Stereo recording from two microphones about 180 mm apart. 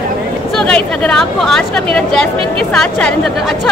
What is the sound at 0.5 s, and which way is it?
Speech, 5° left (ahead or behind).